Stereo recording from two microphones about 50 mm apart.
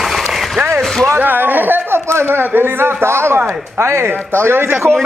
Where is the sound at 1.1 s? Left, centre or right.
Right.